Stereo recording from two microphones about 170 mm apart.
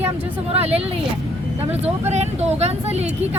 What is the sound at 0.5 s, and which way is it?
Speech, 35° right (ahead or behind).